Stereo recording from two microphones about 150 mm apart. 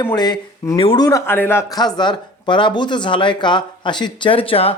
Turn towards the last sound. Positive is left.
turn(degrees=40)  # may be behind; listen again after turning